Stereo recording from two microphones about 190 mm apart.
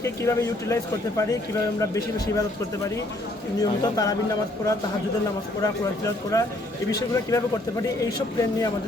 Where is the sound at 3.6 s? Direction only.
20° left (ahead or behind).